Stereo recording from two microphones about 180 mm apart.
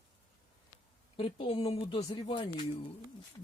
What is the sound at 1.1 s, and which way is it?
A woman's voice, 30° left (ahead or behind).